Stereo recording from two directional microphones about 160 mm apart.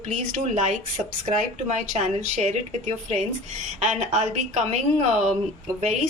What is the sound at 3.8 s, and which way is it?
Speech, 45° right (ahead or behind).